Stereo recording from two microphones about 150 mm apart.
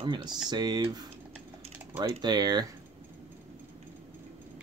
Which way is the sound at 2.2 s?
30° right (ahead or behind).